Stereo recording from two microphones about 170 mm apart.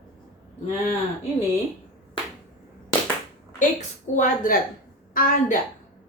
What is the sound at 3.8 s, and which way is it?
Speech, 45° left (ahead or behind).